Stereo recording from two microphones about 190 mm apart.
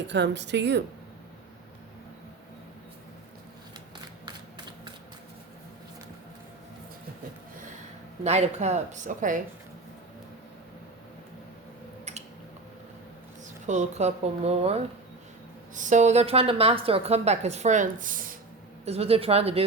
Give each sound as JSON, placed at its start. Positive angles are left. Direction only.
{"t": 0.1, "sound": "speech", "side_deg": -65}
{"t": 8.2, "sound": "a woman's voice", "side_deg": -35}
{"t": 13.7, "sound": "a woman's voice", "side_deg": -40}
{"t": 18.9, "sound": "a woman's voice", "side_deg": -30}